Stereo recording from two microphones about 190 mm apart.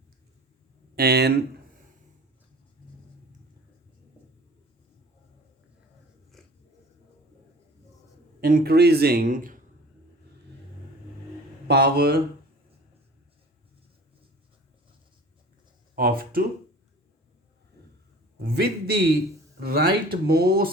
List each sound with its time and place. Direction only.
0.9 s speech: 55° right (ahead or behind)
6.3 s biting: centre (ahead or behind)
8.4 s speech: 50° right (ahead or behind)
11.7 s speech: 55° right (ahead or behind)
16.0 s speech: 50° right (ahead or behind)
18.4 s speech: 55° right (ahead or behind)